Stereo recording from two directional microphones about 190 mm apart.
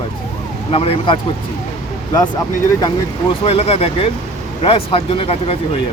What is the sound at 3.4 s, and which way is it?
Speech, 30° left (ahead or behind).